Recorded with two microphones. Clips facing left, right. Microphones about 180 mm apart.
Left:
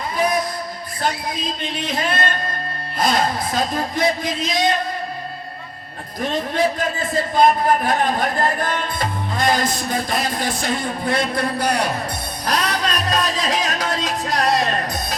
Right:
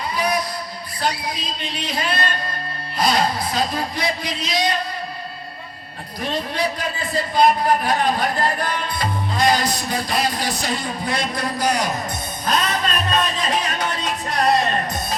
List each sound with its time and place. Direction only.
0.2 s music: 50° left (ahead or behind)
6.1 s music: 50° left (ahead or behind)
11.3 s a man's voice: 60° left (ahead or behind)
12.5 s speech: 75° left (ahead or behind); by 14.9 s 90° left